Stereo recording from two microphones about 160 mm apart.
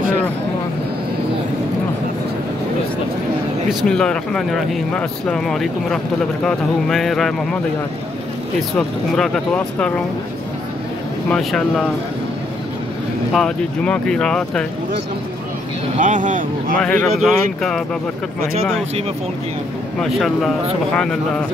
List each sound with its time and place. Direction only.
3.8 s speech: 5° left (ahead or behind)
8.7 s speech: 5° left (ahead or behind)
11.2 s speech: 5° left (ahead or behind)
13.3 s speech: 5° left (ahead or behind)
16.0 s speech: 50° right (ahead or behind)
16.8 s speech: centre (ahead or behind)
20.0 s speech: centre (ahead or behind)